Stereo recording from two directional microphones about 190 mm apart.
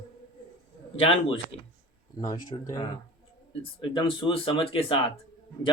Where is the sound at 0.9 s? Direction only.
30° left (ahead or behind).